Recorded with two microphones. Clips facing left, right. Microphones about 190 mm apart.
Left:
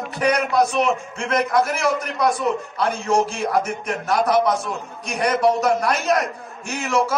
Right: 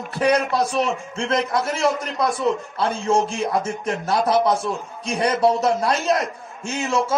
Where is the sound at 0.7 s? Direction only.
25° right (ahead or behind).